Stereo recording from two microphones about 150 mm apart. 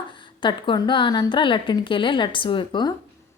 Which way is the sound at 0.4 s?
30° left (ahead or behind).